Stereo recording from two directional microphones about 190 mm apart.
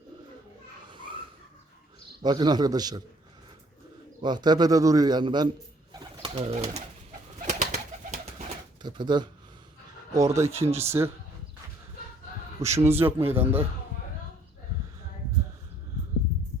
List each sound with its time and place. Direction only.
0.9 s a sound: 25° right (ahead or behind)
2.2 s a man's voice: 20° right (ahead or behind)
4.2 s a man's voice: 20° right (ahead or behind)
7.4 s bird: 40° right (ahead or behind)
8.8 s a man's voice: 25° right (ahead or behind)
12.5 s speech: 15° right (ahead or behind)